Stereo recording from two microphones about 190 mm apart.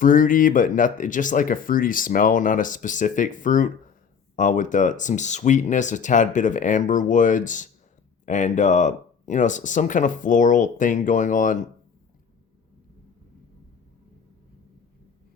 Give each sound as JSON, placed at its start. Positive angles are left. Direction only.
{"t": 0.0, "sound": "speech", "side_deg": 45}